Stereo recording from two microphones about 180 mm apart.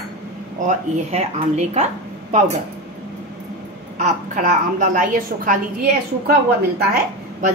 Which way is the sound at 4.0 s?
45° right (ahead or behind).